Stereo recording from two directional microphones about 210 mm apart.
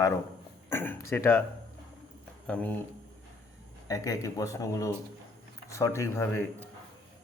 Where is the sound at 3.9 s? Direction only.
15° left (ahead or behind).